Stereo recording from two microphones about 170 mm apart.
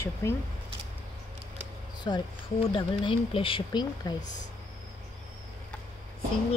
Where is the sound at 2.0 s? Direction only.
25° left (ahead or behind).